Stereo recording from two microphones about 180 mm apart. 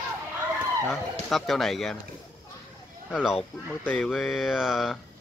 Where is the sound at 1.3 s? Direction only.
Centre (ahead or behind).